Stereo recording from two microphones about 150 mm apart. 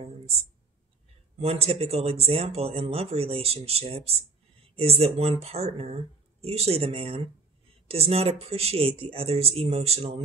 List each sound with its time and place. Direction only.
1.4 s speech: 40° right (ahead or behind)